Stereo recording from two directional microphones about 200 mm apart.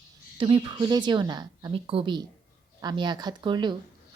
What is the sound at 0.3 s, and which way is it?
Speech, 25° right (ahead or behind).